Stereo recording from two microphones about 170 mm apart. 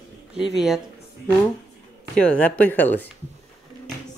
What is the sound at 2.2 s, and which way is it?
Speech, 5° left (ahead or behind).